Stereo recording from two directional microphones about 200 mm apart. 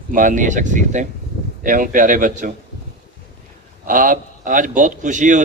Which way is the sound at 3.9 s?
45° right (ahead or behind).